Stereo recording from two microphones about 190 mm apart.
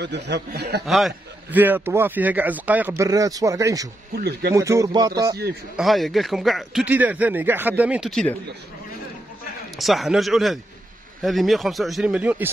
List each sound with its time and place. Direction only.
0.0 s speech: 65° right (ahead or behind)
0.8 s a man's voice: centre (ahead or behind); by 3.9 s 15° right (ahead or behind)
4.1 s speech: 55° right (ahead or behind)
4.6 s speech: 15° right (ahead or behind)
5.8 s speech: centre (ahead or behind)
9.8 s speech: centre (ahead or behind)